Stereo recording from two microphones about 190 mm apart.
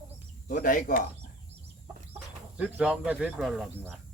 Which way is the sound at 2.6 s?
5° right (ahead or behind).